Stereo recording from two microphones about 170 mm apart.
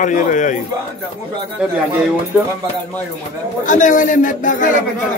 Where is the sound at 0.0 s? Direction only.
50° left (ahead or behind).